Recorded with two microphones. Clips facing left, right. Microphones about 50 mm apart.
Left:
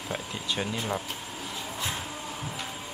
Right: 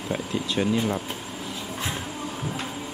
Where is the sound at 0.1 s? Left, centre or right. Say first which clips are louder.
Right 6 dB; centre.